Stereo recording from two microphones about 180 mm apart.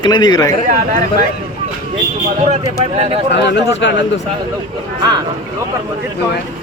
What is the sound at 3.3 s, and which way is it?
Speech, 80° left.